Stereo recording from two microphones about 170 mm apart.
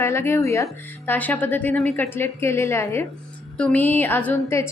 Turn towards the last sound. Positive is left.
turn(degrees=10)  # may be behind; listen again after turning